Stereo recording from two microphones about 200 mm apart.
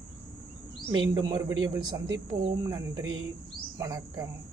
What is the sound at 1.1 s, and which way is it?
Speech, 20° right (ahead or behind).